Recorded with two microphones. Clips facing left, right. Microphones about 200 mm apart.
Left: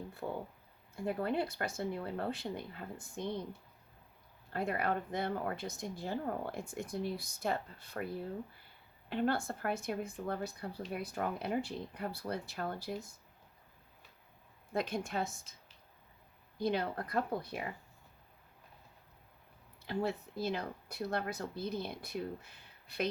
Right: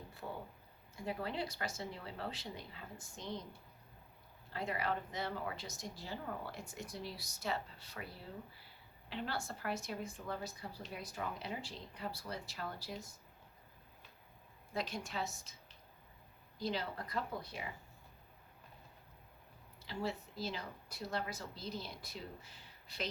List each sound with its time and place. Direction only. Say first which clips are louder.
0.2 s a woman's voice: left 5 dB; 60° left (ahead or behind)
4.5 s a woman's voice: left 4 dB; 55° left (ahead or behind)
14.7 s a woman's voice: left 6 dB; 55° left (ahead or behind)
16.6 s a woman's voice: left 6 dB; 55° left (ahead or behind)
19.8 s a woman's voice: left 5 dB; 55° left (ahead or behind)